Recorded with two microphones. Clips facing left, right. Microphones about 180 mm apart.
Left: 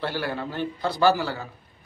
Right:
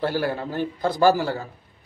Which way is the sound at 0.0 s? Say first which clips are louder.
Right 4 dB; 40° right (ahead or behind).